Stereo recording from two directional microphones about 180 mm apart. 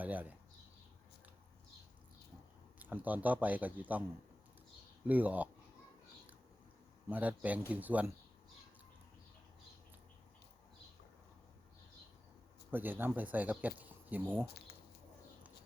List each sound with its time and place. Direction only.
0.0 s speech: 10° right (ahead or behind)
2.7 s speech: 10° right (ahead or behind)
5.0 s speech: 10° right (ahead or behind)
7.1 s speech: 10° right (ahead or behind)
12.7 s speech: 10° right (ahead or behind)
14.4 s speech: 60° left (ahead or behind)